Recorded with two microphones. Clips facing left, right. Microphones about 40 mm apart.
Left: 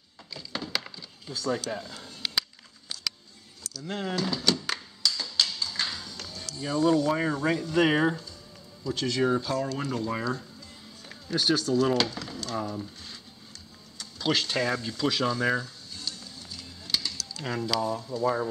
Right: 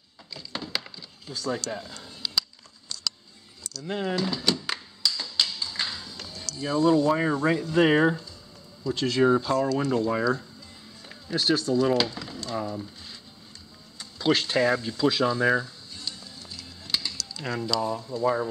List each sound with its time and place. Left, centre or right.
0.3 s a sound: centre
1.7 s speech: centre
2.9 s a sound: centre
3.8 s music: centre
6.5 s speech: centre
11.4 s speech: centre
13.9 s speech: centre
15.3 s a sound: centre
17.7 s speech: centre